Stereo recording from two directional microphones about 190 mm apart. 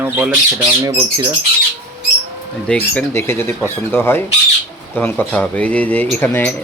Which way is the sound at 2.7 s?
10° left (ahead or behind).